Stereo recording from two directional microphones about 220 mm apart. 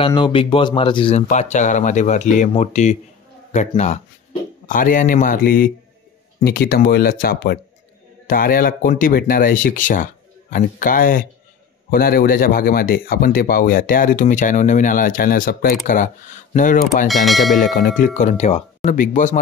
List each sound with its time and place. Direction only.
0.0 s speech: 25° left (ahead or behind)
17.1 s speech: centre (ahead or behind)
17.6 s speech: 40° left (ahead or behind)